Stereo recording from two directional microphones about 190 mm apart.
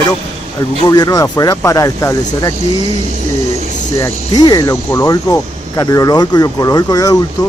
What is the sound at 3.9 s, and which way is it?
Speech, 20° left (ahead or behind).